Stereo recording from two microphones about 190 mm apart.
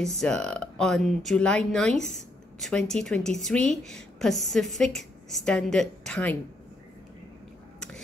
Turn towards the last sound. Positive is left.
turn(degrees=5)  # may be behind; listen again after turning